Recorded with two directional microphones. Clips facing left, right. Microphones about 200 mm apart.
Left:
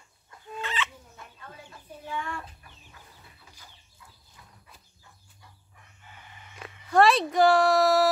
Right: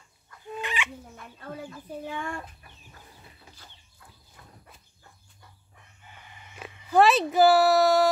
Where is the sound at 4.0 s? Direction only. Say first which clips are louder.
Right 1 dB; 50° right (ahead or behind).